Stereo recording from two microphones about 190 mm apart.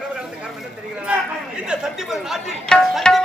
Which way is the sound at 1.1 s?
5° right (ahead or behind).